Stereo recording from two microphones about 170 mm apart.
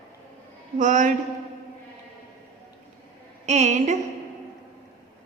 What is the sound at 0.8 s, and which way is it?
Speech, 50° right (ahead or behind).